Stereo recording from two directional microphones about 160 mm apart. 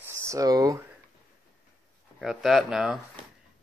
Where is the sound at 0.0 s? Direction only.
20° right (ahead or behind).